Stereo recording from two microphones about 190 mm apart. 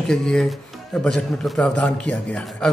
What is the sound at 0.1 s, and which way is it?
Mantra, 5° left (ahead or behind).